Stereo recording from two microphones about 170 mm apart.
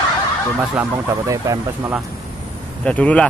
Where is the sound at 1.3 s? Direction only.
20° right (ahead or behind).